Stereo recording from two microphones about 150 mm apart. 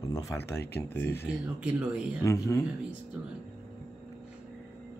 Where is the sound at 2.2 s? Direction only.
20° left (ahead or behind).